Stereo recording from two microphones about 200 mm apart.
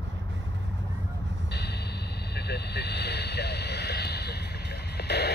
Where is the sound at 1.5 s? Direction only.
55° left (ahead or behind).